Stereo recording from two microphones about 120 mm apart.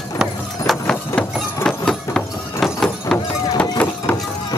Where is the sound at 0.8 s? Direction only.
10° left (ahead or behind).